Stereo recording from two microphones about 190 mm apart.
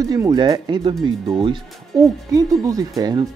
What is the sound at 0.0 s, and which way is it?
Speech, 20° right (ahead or behind).